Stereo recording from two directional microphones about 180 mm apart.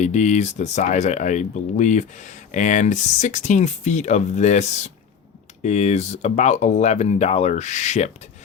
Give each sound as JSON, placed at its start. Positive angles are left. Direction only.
{"t": 0.0, "sound": "speech", "side_deg": 40}